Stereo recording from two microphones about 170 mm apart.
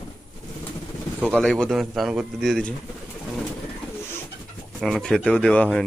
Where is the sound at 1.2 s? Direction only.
Centre (ahead or behind).